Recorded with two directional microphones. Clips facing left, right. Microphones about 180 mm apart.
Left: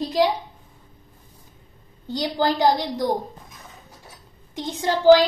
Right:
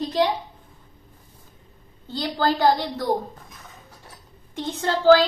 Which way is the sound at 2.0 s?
15° left (ahead or behind).